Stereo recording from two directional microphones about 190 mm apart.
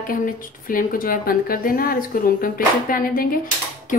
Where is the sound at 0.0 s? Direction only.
45° left (ahead or behind).